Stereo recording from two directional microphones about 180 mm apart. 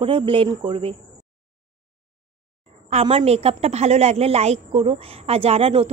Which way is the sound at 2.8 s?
35° right (ahead or behind).